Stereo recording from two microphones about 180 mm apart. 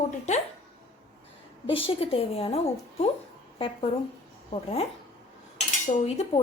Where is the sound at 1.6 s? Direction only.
30° left (ahead or behind).